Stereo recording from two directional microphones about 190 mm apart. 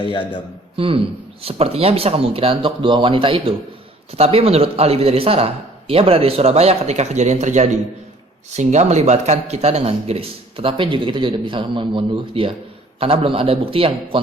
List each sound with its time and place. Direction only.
0.0 s a man's voice: 25° left (ahead or behind)
0.8 s speech: 30° right (ahead or behind)